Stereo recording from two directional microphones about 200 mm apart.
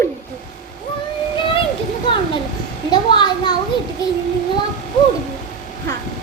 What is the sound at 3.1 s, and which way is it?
Speech, 20° left (ahead or behind).